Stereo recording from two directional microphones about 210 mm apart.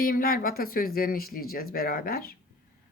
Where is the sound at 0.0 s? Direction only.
45° left (ahead or behind).